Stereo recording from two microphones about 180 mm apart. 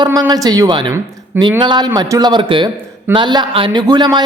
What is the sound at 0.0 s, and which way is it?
A man's voice, 20° right (ahead or behind).